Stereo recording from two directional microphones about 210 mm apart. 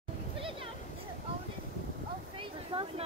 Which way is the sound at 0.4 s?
25° right (ahead or behind).